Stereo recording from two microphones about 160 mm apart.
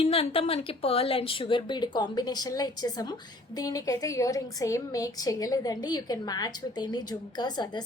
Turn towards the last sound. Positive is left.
turn(degrees=25)  # may be behind; listen again after turning